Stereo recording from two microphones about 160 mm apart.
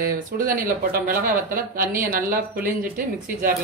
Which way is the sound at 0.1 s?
60° right (ahead or behind).